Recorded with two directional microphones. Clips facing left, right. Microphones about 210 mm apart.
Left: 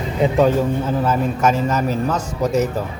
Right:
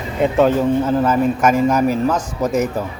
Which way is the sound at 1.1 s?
10° right (ahead or behind).